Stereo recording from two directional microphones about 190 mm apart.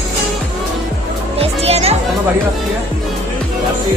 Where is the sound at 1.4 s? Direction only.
35° right (ahead or behind).